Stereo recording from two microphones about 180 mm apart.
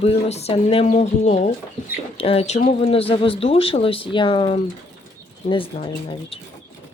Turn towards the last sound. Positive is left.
turn(degrees=30)  # may be behind; listen again after turning